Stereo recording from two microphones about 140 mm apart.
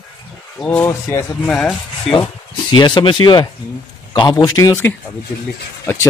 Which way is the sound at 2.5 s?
35° left (ahead or behind).